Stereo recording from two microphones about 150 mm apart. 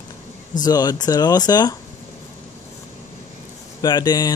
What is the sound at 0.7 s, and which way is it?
Speech, 25° left (ahead or behind).